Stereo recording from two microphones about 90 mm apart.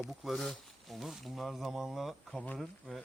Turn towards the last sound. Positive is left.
turn(degrees=-15)  # may be behind; listen again after turning